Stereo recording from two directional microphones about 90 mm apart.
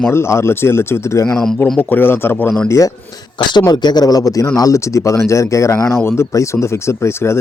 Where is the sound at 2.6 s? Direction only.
35° left (ahead or behind).